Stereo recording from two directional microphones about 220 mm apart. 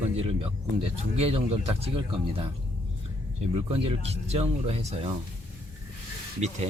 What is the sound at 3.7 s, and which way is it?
Speech, 25° right (ahead or behind).